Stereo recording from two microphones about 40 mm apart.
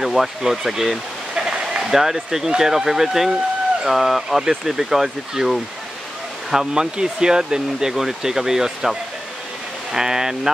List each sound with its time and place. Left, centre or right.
0.0 s speech: centre
1.3 s speech: centre
6.7 s speech: centre
9.9 s speech: centre